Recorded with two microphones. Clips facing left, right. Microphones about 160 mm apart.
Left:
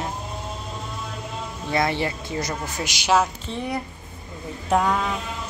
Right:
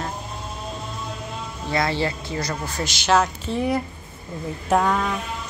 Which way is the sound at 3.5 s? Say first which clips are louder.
Right 5 dB; 10° right (ahead or behind).